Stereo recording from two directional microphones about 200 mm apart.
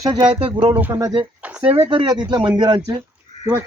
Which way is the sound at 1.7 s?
30° right (ahead or behind).